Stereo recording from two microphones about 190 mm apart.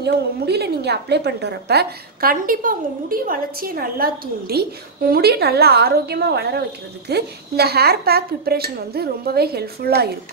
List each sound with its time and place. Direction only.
0.0 s a woman's voice: 60° right (ahead or behind)